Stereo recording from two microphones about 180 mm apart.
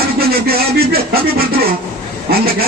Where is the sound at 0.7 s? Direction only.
60° right (ahead or behind).